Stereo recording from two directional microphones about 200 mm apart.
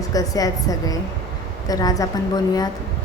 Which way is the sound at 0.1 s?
15° left (ahead or behind).